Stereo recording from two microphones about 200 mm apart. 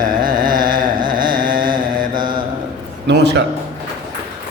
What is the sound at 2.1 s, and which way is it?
Mantra, 25° right (ahead or behind).